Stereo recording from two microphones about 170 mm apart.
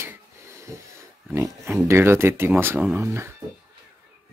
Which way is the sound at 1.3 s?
15° right (ahead or behind).